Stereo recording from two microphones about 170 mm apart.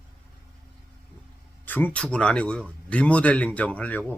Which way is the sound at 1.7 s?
10° left (ahead or behind).